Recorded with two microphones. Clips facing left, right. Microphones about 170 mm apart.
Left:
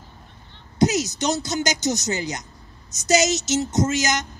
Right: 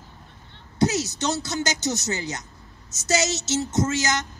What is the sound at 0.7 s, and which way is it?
A woman's voice, 15° left (ahead or behind).